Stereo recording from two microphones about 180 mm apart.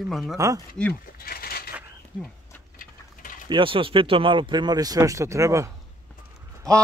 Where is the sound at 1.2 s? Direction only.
55° left (ahead or behind).